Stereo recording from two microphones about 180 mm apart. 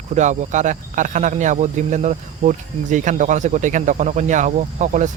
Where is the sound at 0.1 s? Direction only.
40° right (ahead or behind).